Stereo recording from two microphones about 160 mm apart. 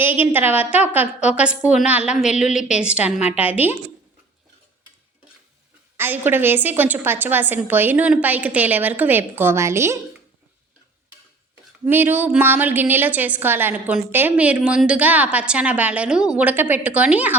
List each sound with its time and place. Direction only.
0.2 s a woman's voice: 10° right (ahead or behind)
2.3 s a woman's voice: 50° left (ahead or behind)
2.7 s a woman's voice: 5° right (ahead or behind)
6.0 s a woman's voice: 15° right (ahead or behind)
11.9 s a woman's voice: 10° right (ahead or behind)